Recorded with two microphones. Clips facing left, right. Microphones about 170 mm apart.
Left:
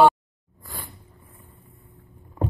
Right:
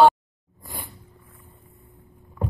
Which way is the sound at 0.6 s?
15° right (ahead or behind).